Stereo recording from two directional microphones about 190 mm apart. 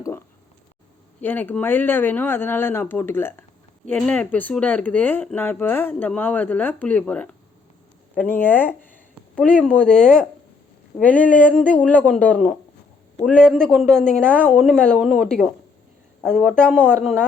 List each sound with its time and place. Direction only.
1.2 s speech: 10° left (ahead or behind)
14.4 s speech: 10° right (ahead or behind)
14.7 s speech: 5° left (ahead or behind)